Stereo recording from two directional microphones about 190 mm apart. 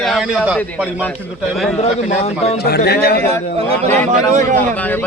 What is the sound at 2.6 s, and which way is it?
Speech, 55° left (ahead or behind).